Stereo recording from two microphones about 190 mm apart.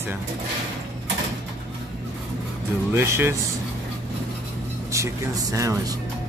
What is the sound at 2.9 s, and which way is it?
Speech, 10° right (ahead or behind).